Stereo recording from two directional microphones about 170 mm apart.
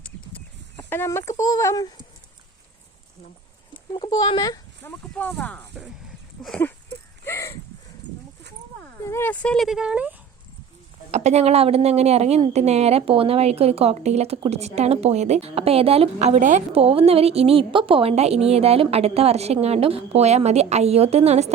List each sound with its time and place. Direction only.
0.9 s speech: 15° left (ahead or behind)
3.9 s speech: 25° left (ahead or behind)
5.1 s speech: 10° left (ahead or behind)
6.6 s a sound: 15° left (ahead or behind)
9.0 s speech: 15° left (ahead or behind); by 10.2 s 5° right (ahead or behind)
11.1 s a woman's voice: 40° right (ahead or behind)